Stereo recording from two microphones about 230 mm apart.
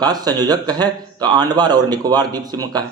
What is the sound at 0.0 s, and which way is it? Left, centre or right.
A man's voice, centre.